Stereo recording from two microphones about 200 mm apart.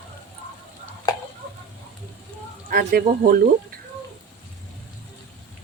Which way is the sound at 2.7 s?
50° right (ahead or behind).